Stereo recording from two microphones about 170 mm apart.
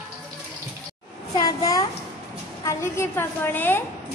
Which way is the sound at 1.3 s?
20° left (ahead or behind).